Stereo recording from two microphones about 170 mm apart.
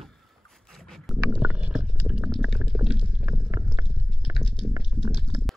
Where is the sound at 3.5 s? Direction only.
10° right (ahead or behind).